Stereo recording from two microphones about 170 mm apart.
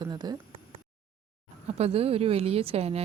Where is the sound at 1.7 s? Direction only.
40° right (ahead or behind).